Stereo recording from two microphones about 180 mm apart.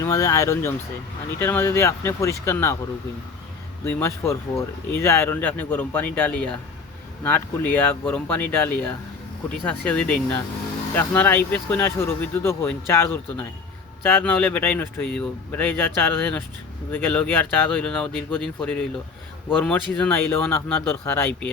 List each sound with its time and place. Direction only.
0.0 s speech: 20° left (ahead or behind)
3.8 s speech: 15° left (ahead or behind)
20.0 s speech: 10° left (ahead or behind)